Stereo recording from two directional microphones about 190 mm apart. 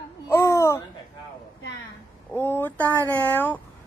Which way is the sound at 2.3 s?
10° left (ahead or behind).